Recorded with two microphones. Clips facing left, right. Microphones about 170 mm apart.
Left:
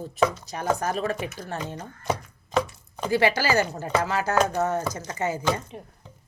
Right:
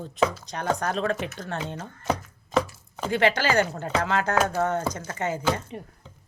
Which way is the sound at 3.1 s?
10° left (ahead or behind).